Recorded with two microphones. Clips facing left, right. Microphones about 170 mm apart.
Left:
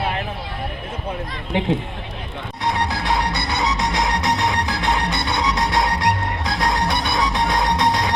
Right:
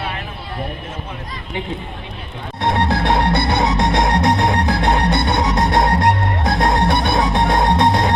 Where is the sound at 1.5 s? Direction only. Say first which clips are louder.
Left 5 dB; 70° left (ahead or behind).